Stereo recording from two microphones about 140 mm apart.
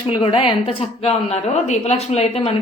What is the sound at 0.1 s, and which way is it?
A woman's voice, 40° left (ahead or behind).